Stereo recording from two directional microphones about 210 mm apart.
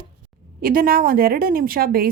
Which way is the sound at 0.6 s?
45° right (ahead or behind).